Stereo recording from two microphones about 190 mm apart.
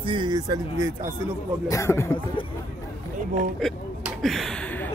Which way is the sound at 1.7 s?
15° left (ahead or behind).